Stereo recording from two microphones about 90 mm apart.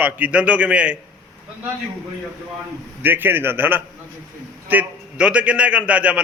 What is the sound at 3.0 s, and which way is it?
A man's voice, 20° right (ahead or behind).